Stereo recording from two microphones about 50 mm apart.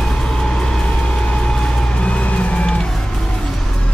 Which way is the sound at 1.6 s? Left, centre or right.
Left.